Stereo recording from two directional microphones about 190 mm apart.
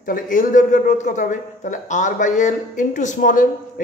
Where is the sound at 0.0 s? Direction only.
45° left (ahead or behind).